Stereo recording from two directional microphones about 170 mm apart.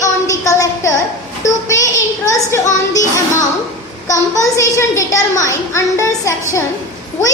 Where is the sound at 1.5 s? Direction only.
20° left (ahead or behind).